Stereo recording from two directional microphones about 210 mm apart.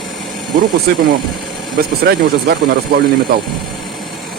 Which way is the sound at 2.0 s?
45° right (ahead or behind).